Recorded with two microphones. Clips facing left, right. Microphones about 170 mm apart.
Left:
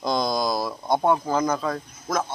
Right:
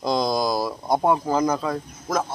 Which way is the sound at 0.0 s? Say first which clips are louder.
Right 2 dB; 5° right (ahead or behind).